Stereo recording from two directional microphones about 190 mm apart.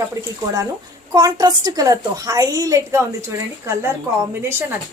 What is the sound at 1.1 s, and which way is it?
A woman's voice, 20° right (ahead or behind).